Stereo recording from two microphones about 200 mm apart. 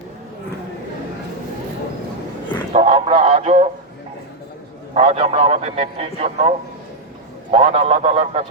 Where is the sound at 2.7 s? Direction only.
30° right (ahead or behind).